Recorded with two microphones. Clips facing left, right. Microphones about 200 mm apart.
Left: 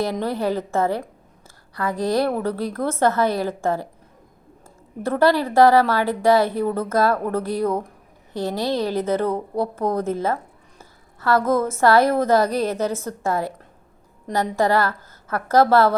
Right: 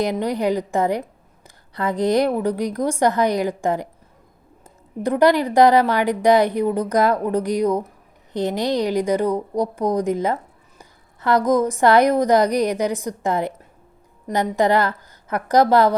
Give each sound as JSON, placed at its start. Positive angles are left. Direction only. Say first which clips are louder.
{"t": 0.0, "sound": "a woman's voice", "louder": "right 2 dB", "side_deg": -15}